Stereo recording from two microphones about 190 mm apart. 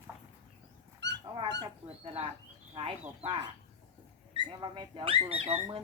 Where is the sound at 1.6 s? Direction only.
30° right (ahead or behind).